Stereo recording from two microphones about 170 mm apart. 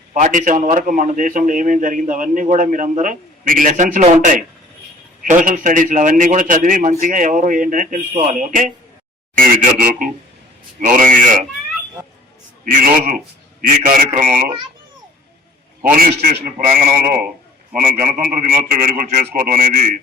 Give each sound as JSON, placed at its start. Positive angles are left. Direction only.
{"t": 0.1, "sound": "a man's voice", "side_deg": -50}
{"t": 12.6, "sound": "a man's voice", "side_deg": -55}
{"t": 15.8, "sound": "a man's voice", "side_deg": -55}
{"t": 17.7, "sound": "a man's voice", "side_deg": -5}
{"t": 17.9, "sound": "a man's voice", "side_deg": -55}